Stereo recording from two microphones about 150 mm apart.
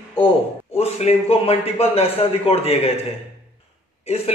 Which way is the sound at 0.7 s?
45° left (ahead or behind).